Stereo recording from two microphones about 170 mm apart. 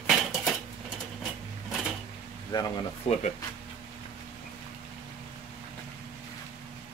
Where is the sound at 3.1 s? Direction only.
40° left (ahead or behind).